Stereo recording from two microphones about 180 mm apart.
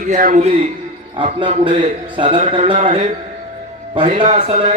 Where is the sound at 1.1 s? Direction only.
30° right (ahead or behind).